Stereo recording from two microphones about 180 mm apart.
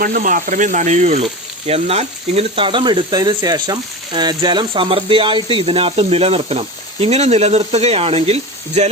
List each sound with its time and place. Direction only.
0.0 s speech: 50° right (ahead or behind)